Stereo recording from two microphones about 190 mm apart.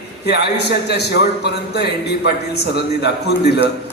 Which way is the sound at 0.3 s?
60° left (ahead or behind).